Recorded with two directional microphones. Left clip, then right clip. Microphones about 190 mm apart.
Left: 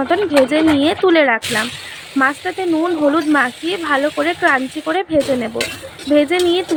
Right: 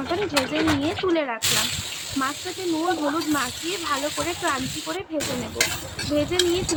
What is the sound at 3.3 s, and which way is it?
Speech, 35° left (ahead or behind).